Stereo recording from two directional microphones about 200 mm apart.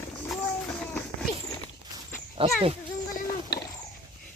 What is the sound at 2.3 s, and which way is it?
Speech, 30° right (ahead or behind).